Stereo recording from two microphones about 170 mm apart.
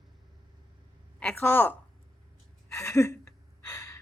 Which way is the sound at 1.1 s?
10° left (ahead or behind).